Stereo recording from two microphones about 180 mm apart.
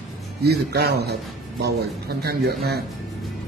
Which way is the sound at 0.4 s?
65° right (ahead or behind).